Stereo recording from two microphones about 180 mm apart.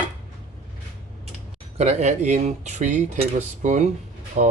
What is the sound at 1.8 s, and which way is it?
Speech, 40° right (ahead or behind).